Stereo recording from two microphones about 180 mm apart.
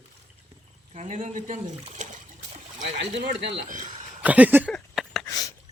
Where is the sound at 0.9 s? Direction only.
40° right (ahead or behind).